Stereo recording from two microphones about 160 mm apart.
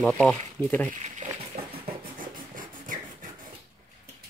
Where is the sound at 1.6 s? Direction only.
75° right (ahead or behind).